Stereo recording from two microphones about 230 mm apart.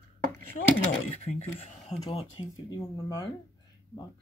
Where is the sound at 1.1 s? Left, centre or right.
Left.